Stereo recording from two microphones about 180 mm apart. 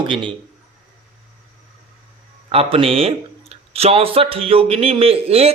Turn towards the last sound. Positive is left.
turn(degrees=-35)  # may be behind; listen again after turning